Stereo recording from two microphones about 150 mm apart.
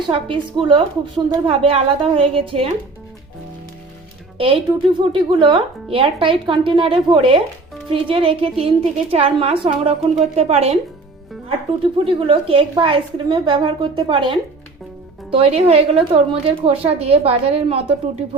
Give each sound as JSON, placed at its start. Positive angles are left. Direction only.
{"t": 0.1, "sound": "speech", "side_deg": -35}
{"t": 4.4, "sound": "speech", "side_deg": -35}
{"t": 12.0, "sound": "speech", "side_deg": -35}